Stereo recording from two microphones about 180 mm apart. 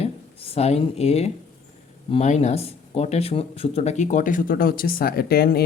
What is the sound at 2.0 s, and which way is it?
Speech, 35° left (ahead or behind).